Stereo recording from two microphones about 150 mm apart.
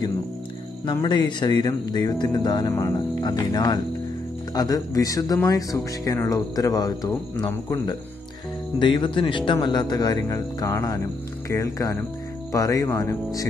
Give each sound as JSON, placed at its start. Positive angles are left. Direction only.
{"t": 0.8, "sound": "speech", "side_deg": 30}
{"t": 8.7, "sound": "speech", "side_deg": 30}